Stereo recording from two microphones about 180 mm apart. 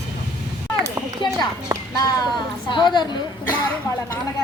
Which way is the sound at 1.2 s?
25° left (ahead or behind).